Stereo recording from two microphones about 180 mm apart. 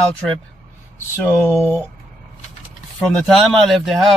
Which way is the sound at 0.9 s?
15° left (ahead or behind).